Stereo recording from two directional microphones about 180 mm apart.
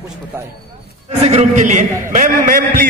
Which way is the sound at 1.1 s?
35° right (ahead or behind).